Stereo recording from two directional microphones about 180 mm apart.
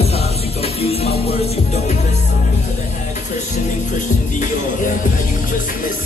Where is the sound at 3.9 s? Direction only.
45° left (ahead or behind).